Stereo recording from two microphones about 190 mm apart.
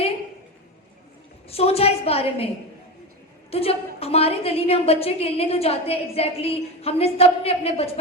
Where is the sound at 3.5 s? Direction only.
30° left (ahead or behind).